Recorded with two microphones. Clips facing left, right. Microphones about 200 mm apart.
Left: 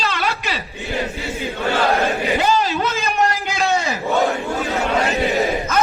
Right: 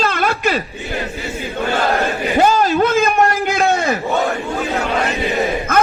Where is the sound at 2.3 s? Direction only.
45° right (ahead or behind).